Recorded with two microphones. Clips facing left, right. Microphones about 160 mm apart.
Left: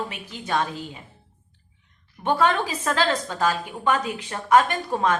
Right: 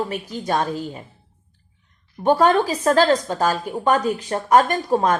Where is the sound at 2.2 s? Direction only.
40° right (ahead or behind).